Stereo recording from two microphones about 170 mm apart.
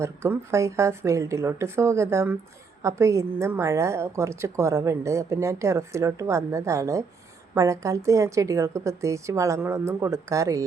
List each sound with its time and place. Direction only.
0.0 s a woman's voice: 15° right (ahead or behind)